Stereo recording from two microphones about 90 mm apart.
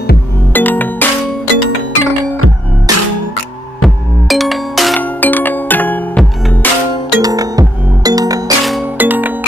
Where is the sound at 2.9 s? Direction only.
45° right (ahead or behind).